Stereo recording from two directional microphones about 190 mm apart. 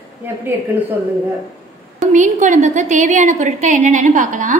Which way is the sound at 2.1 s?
40° right (ahead or behind).